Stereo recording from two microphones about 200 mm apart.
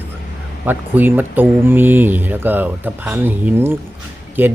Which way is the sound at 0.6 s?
10° right (ahead or behind).